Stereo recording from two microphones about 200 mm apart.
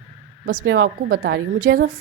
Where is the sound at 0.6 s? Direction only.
75° right (ahead or behind).